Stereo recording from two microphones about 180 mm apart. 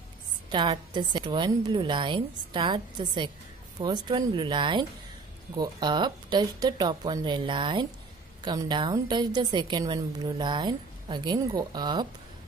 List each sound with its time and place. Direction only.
0.5 s a woman's voice: 25° right (ahead or behind)